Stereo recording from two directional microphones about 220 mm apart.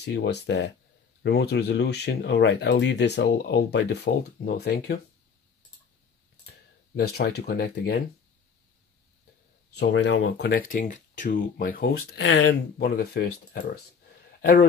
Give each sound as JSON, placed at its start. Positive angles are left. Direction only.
{"t": 0.0, "sound": "speech", "side_deg": 50}
{"t": 7.0, "sound": "speech", "side_deg": 45}
{"t": 9.8, "sound": "speech", "side_deg": 50}
{"t": 12.2, "sound": "a man's voice", "side_deg": 55}